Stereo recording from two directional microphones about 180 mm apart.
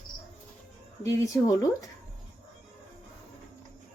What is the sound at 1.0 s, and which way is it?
Speech, 20° left (ahead or behind).